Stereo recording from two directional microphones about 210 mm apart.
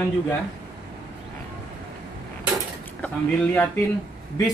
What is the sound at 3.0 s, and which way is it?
Speech, 5° left (ahead or behind).